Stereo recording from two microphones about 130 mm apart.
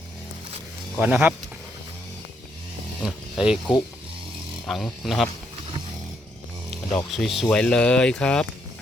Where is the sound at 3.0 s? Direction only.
5° right (ahead or behind).